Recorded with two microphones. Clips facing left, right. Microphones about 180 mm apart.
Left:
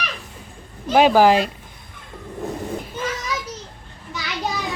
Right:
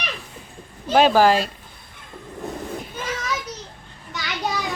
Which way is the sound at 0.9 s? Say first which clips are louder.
Left 2 dB; 15° left (ahead or behind).